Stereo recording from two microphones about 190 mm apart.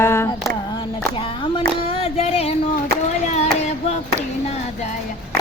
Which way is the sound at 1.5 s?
30° left (ahead or behind).